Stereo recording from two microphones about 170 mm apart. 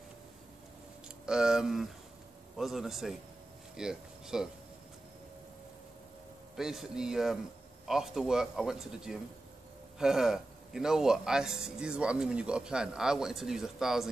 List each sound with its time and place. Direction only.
1.0 s a man's voice: 5° right (ahead or behind)
6.5 s a man's voice: centre (ahead or behind)